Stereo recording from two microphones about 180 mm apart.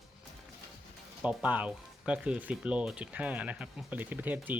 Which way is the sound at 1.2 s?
5° right (ahead or behind).